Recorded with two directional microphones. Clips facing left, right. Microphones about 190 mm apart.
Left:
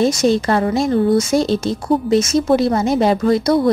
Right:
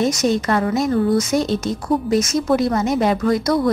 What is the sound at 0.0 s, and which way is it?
A woman's voice, 30° left (ahead or behind).